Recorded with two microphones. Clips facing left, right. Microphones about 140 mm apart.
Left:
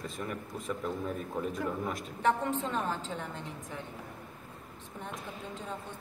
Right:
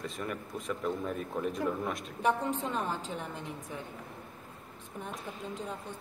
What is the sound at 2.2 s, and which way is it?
A woman's voice, 15° right (ahead or behind).